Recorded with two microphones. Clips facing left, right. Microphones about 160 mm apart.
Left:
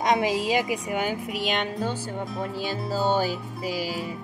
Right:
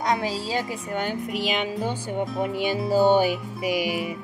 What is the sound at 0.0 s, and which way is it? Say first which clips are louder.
A woman's voice: left 2 dB; 20° left (ahead or behind).